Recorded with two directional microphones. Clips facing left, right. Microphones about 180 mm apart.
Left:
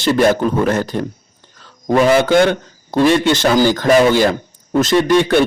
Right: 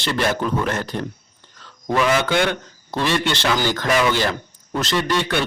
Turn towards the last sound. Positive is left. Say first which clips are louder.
# left 9 dB
turn(degrees=45)  # may be behind; listen again after turning